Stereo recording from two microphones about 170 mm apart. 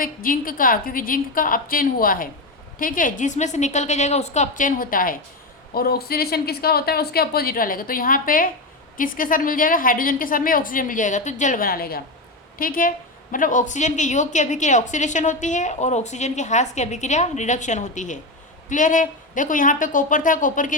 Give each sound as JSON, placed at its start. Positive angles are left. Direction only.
{"t": 0.0, "sound": "a woman's voice", "side_deg": 55}